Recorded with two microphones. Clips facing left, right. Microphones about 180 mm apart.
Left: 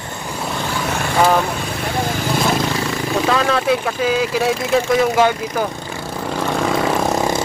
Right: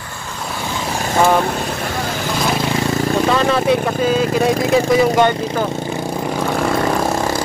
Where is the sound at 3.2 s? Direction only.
Centre (ahead or behind).